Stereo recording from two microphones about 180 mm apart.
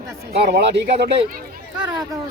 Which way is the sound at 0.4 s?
65° right (ahead or behind).